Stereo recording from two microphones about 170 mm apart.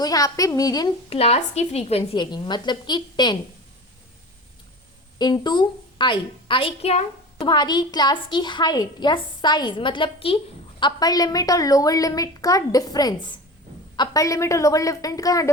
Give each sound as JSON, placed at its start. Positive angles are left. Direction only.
{"t": 0.0, "sound": "a woman's voice", "side_deg": 20}
{"t": 1.1, "sound": "a woman's voice", "side_deg": 35}
{"t": 5.1, "sound": "a woman's voice", "side_deg": 25}